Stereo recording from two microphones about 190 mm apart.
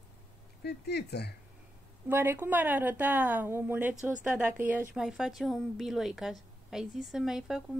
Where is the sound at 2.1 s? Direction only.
10° right (ahead or behind).